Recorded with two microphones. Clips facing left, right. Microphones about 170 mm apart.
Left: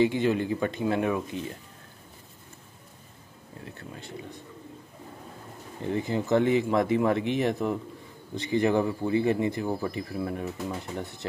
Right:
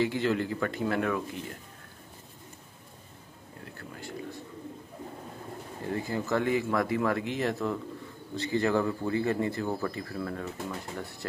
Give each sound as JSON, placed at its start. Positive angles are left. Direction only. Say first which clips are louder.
{"t": 0.0, "sound": "speech", "louder": "left 4 dB", "side_deg": 20}
{"t": 3.6, "sound": "speech", "louder": "even", "side_deg": 20}
{"t": 5.9, "sound": "speech", "louder": "left 4 dB", "side_deg": 20}